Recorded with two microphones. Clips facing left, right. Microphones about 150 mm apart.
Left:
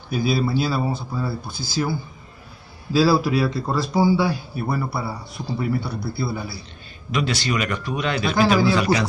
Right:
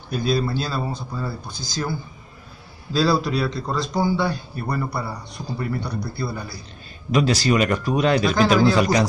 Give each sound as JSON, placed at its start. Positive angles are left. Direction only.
{"t": 0.1, "sound": "a man's voice", "side_deg": 5}
{"t": 7.1, "sound": "a man's voice", "side_deg": -40}
{"t": 8.3, "sound": "a man's voice", "side_deg": 5}